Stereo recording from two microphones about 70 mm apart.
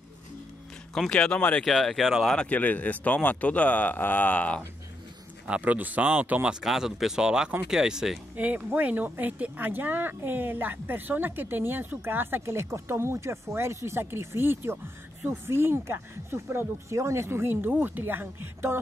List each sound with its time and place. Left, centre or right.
0.9 s speech: centre
2.3 s speech: left
5.5 s speech: right
6.6 s speech: centre
8.4 s speech: right